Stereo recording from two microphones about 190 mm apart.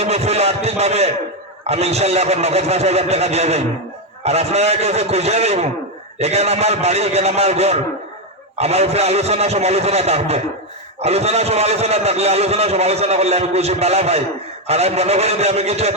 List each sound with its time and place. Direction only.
0.0 s a man's voice: 35° right (ahead or behind)